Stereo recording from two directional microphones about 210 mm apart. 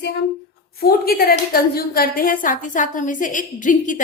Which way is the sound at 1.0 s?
45° left (ahead or behind).